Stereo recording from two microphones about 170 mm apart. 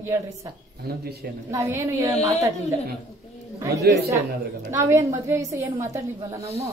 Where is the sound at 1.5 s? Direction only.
15° right (ahead or behind).